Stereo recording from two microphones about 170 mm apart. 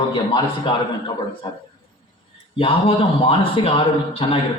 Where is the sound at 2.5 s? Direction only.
35° left (ahead or behind).